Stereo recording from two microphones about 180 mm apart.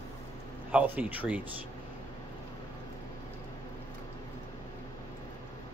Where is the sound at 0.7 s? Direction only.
10° right (ahead or behind).